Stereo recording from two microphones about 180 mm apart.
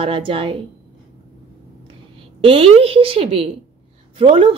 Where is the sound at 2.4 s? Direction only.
30° right (ahead or behind).